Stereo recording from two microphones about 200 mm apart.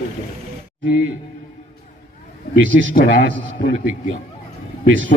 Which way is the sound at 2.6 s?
70° right (ahead or behind).